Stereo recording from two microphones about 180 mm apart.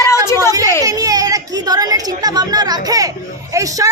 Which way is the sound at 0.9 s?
20° right (ahead or behind).